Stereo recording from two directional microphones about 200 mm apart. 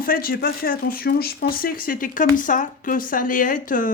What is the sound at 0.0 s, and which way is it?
Speech, 45° left (ahead or behind).